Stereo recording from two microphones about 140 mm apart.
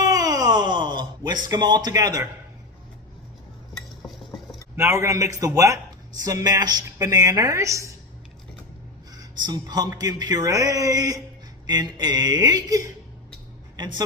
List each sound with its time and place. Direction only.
0.0 s a sound: 25° right (ahead or behind)
4.8 s a woman's voice: 20° right (ahead or behind)
9.1 s a woman's voice: 30° right (ahead or behind)